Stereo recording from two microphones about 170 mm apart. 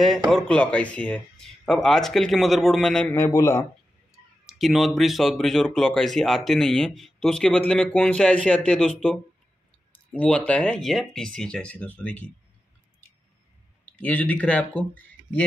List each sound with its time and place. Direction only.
0.0 s speech: centre (ahead or behind)
3.2 s speech: 20° left (ahead or behind)
4.5 s speech: centre (ahead or behind)
13.9 s speech: 10° left (ahead or behind)